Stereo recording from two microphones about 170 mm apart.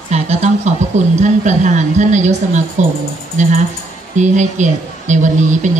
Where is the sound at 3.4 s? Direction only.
45° right (ahead or behind).